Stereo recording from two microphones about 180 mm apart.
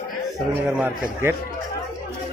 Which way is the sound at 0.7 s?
10° right (ahead or behind).